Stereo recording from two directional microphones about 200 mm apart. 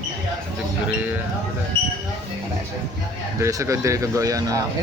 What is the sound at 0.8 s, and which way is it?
Speech, 5° right (ahead or behind).